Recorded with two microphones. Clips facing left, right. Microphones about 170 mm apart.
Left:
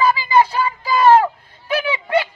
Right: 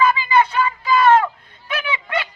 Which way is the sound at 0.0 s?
35° left (ahead or behind).